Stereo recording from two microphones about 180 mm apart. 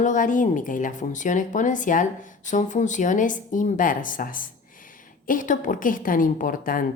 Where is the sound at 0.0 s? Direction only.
45° left (ahead or behind).